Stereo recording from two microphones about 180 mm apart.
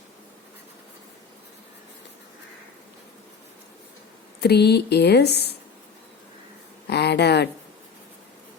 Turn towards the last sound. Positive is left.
turn(degrees=70)  # may be behind; listen again after turning